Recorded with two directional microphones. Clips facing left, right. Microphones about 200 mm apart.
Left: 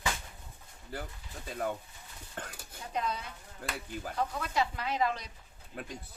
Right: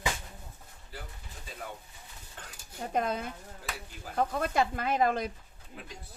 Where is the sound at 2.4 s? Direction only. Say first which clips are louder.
Left 7 dB; 55° left (ahead or behind).